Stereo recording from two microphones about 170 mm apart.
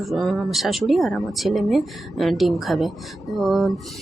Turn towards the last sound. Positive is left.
turn(degrees=0)  # may be behind; listen again after turning